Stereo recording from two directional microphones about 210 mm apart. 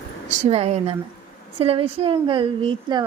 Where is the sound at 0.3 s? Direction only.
30° right (ahead or behind).